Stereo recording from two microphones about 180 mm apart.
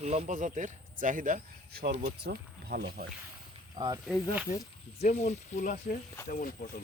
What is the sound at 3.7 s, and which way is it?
Speech, 25° right (ahead or behind).